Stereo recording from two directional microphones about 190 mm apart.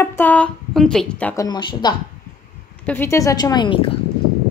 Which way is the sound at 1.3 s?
20° left (ahead or behind).